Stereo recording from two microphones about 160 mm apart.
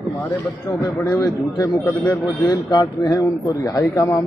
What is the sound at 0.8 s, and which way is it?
A man's voice, 20° left (ahead or behind).